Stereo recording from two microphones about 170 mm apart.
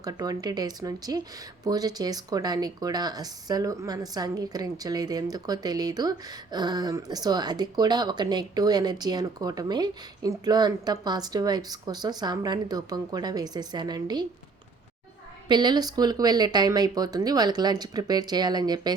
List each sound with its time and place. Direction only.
0.0 s speech: 20° right (ahead or behind)
15.4 s speech: 25° right (ahead or behind)